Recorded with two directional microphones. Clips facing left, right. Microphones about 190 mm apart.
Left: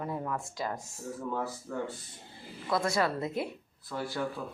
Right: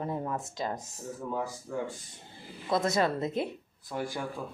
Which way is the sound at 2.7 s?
20° right (ahead or behind).